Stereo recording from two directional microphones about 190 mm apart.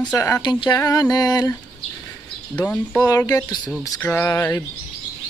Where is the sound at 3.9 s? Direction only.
15° left (ahead or behind).